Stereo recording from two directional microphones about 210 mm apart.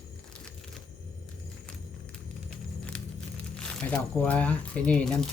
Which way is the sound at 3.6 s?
5° left (ahead or behind).